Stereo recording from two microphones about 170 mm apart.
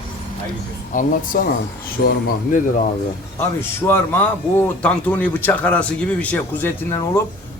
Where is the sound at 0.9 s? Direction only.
50° left (ahead or behind).